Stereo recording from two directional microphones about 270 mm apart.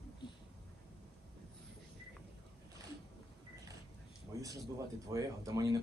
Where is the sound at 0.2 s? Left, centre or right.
Centre.